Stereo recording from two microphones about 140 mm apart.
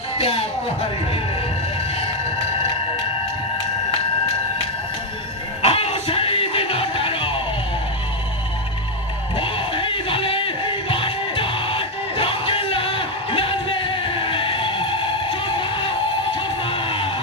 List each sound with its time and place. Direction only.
0.2 s speech: 40° left (ahead or behind)
5.6 s music: 45° left (ahead or behind)
9.4 s music: 40° left (ahead or behind)